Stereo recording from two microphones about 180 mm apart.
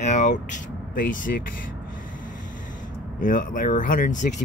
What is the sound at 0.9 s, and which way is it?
Speech, 50° left (ahead or behind).